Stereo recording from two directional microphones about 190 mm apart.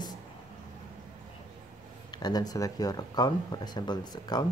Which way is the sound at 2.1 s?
20° left (ahead or behind).